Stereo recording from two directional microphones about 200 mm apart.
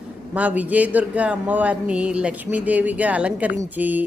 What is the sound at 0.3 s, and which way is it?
Speech, 10° right (ahead or behind).